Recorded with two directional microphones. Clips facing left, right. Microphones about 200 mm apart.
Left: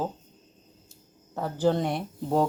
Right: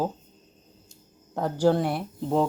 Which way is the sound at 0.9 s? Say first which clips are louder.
Right 4 dB; 15° right (ahead or behind).